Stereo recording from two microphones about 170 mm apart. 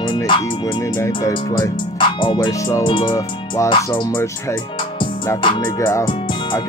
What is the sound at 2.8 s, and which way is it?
Speech, 30° left (ahead or behind).